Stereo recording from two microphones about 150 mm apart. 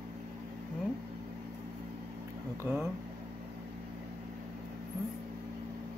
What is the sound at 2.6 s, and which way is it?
Speech, 10° right (ahead or behind).